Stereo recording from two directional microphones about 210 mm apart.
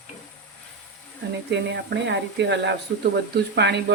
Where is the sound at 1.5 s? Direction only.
55° right (ahead or behind).